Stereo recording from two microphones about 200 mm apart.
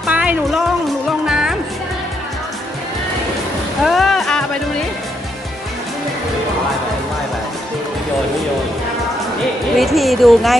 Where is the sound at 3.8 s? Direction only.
Centre (ahead or behind).